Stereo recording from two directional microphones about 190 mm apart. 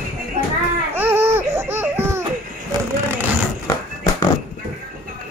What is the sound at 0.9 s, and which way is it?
Baby cry, 10° right (ahead or behind).